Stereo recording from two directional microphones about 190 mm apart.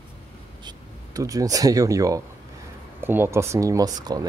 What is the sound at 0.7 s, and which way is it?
Speech, 20° right (ahead or behind).